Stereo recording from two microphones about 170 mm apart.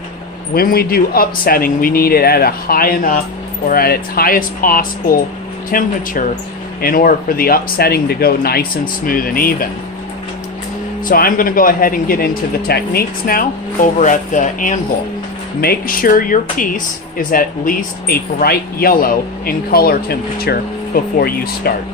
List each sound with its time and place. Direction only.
0.5 s speech: 60° left (ahead or behind)
11.1 s speech: 55° left (ahead or behind)